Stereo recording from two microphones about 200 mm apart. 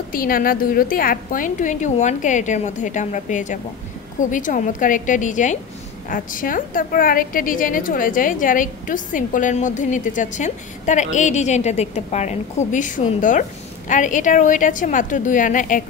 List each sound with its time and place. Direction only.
0.1 s a woman's voice: 45° left (ahead or behind)